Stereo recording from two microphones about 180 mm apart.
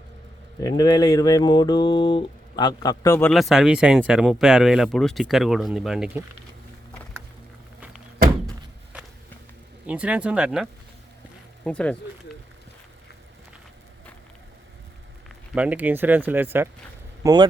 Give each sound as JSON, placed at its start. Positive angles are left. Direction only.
{"t": 0.6, "sound": "speech", "side_deg": 20}
{"t": 3.3, "sound": "speech", "side_deg": 0}
{"t": 9.8, "sound": "speech", "side_deg": -5}
{"t": 11.6, "sound": "speech", "side_deg": 5}
{"t": 15.5, "sound": "speech", "side_deg": -5}